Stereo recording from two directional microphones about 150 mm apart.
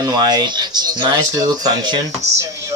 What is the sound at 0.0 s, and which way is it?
Speech, 25° right (ahead or behind).